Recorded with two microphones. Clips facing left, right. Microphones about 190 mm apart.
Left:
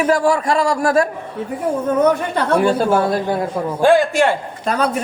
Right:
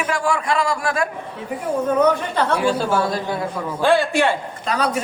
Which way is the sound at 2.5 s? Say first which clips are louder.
Left 6 dB; 55° left (ahead or behind).